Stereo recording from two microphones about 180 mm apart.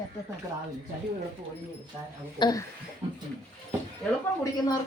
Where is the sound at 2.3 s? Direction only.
25° left (ahead or behind).